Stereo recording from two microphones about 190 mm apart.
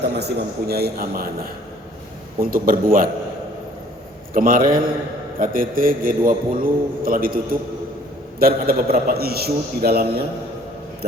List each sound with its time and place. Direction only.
0.1 s a man's voice: 60° right (ahead or behind)
2.4 s a man's voice: 50° right (ahead or behind)
4.4 s a man's voice: 50° right (ahead or behind)